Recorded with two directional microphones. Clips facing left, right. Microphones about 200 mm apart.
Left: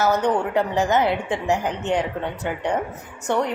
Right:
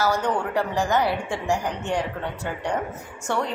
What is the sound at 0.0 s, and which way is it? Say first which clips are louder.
A woman's voice: left 3 dB; 20° left (ahead or behind).